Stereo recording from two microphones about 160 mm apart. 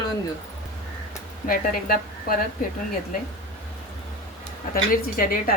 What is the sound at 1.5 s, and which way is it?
Speech, 65° left (ahead or behind).